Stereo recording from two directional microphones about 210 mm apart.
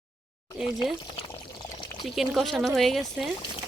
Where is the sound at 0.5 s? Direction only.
Centre (ahead or behind).